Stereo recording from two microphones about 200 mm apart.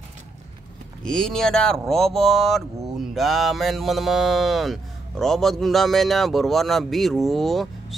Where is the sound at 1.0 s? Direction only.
5° left (ahead or behind).